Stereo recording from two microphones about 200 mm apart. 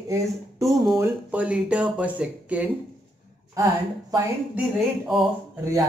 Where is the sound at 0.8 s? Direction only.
15° right (ahead or behind).